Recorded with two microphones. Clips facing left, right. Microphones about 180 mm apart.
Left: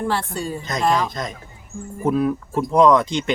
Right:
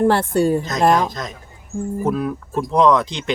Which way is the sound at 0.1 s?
55° right (ahead or behind).